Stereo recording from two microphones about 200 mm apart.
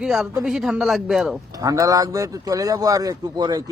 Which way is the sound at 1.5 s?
15° right (ahead or behind).